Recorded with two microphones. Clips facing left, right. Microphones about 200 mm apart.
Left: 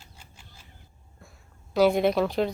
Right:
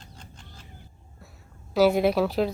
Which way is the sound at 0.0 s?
10° left (ahead or behind).